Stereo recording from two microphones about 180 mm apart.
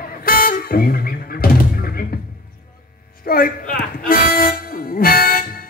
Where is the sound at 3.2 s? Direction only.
55° left (ahead or behind).